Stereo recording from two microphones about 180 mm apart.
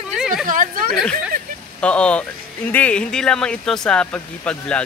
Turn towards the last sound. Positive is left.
turn(degrees=5)  # may be behind; listen again after turning